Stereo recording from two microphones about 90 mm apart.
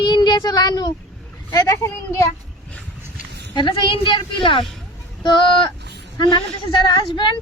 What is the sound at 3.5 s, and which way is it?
A woman's voice, 65° left (ahead or behind).